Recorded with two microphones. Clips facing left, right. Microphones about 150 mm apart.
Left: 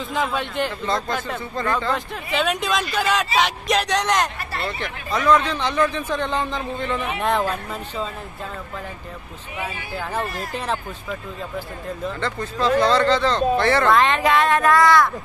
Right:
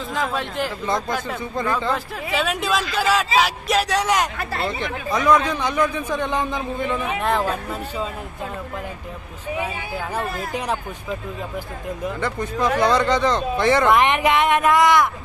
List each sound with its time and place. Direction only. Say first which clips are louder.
0.1 s speech: left 1 dB; centre (ahead or behind)
0.8 s speech: right 1 dB; 15° right (ahead or behind)
2.3 s speech: even; centre (ahead or behind)
7.2 s speech: left 1 dB; centre (ahead or behind)
9.6 s speech: even; 15° right (ahead or behind)